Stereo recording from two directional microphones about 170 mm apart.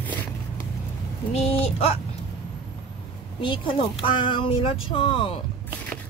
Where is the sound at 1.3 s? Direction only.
35° left (ahead or behind).